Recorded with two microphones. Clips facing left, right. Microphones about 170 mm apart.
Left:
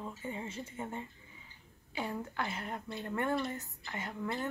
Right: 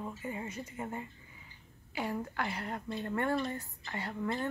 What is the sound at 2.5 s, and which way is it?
Speech, 20° left (ahead or behind).